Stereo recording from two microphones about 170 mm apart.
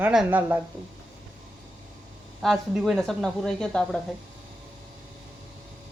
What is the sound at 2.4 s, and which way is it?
Speech, centre (ahead or behind).